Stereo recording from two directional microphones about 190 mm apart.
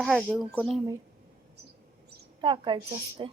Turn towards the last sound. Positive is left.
turn(degrees=-25)  # may be behind; listen again after turning